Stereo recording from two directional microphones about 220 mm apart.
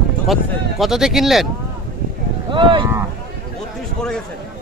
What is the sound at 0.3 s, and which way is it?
Speech, centre (ahead or behind).